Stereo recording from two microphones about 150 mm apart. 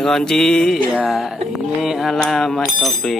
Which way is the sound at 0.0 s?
5° left (ahead or behind).